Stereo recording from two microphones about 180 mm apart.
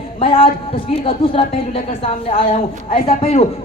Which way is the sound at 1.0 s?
30° left (ahead or behind).